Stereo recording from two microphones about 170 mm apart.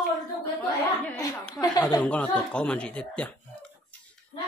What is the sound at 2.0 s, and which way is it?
Speech, 5° left (ahead or behind).